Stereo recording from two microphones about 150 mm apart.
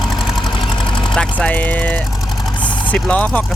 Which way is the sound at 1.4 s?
10° left (ahead or behind).